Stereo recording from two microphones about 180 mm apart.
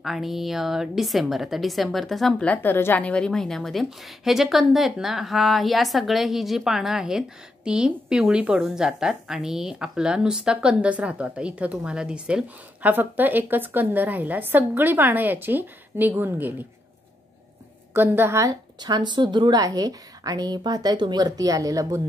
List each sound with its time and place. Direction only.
0.0 s a woman's voice: centre (ahead or behind)
17.9 s a woman's voice: 10° right (ahead or behind)